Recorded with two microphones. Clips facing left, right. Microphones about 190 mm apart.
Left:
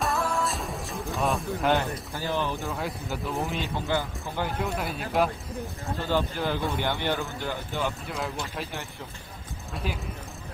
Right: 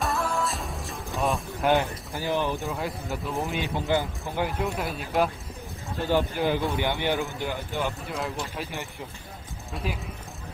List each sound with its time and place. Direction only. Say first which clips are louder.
0.0 s music: even; centre (ahead or behind)
1.8 s speech: right 2 dB; 15° right (ahead or behind)
2.6 s a man's voice: right 1 dB; centre (ahead or behind)
3.6 s speech: right 3 dB; 15° right (ahead or behind)
4.5 s a man's voice: right 1 dB; centre (ahead or behind)
5.9 s speech: right 3 dB; 15° right (ahead or behind)
9.8 s a man's voice: right 1 dB; centre (ahead or behind)